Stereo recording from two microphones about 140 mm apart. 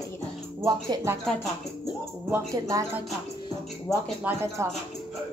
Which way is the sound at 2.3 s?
25° right (ahead or behind).